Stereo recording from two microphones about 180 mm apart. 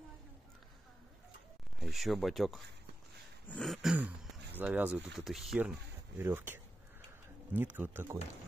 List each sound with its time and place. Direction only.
1.8 s speech: centre (ahead or behind)
3.4 s throat clearing: 5° left (ahead or behind)
4.6 s speech: 5° right (ahead or behind)